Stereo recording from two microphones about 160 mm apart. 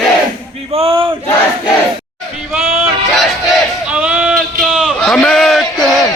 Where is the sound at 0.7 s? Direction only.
35° right (ahead or behind).